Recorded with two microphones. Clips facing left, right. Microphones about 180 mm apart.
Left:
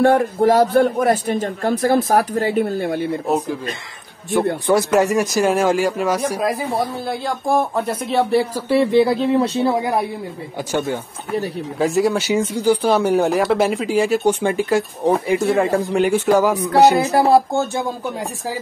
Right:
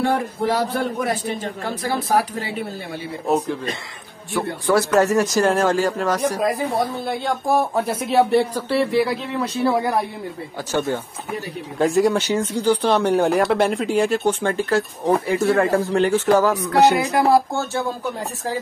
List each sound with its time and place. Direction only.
0.0 s a man's voice: 55° left (ahead or behind)
3.3 s speech: centre (ahead or behind)
4.6 s speech: 15° left (ahead or behind)
7.1 s speech: centre (ahead or behind)
8.6 s speech: 20° left (ahead or behind)
9.8 s speech: 15° left (ahead or behind)
11.8 s speech: centre (ahead or behind)
16.9 s speech: 35° left (ahead or behind)
17.3 s speech: 20° left (ahead or behind)